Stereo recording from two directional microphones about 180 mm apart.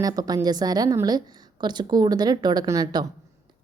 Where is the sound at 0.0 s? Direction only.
20° right (ahead or behind).